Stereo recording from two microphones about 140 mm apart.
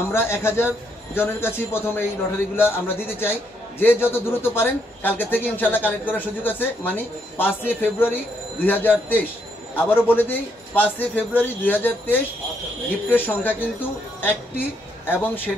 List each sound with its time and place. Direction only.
0.1 s a man's voice: 15° left (ahead or behind)
15.0 s a man's voice: 15° left (ahead or behind)